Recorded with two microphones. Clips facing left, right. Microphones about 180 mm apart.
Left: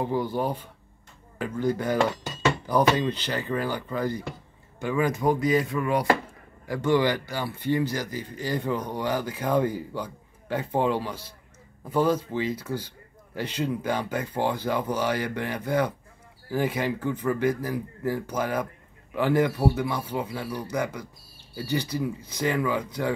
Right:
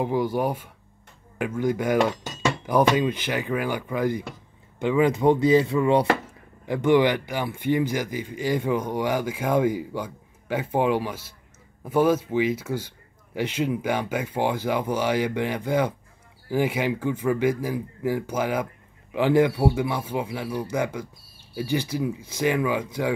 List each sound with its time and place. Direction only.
0.0 s speech: 15° right (ahead or behind)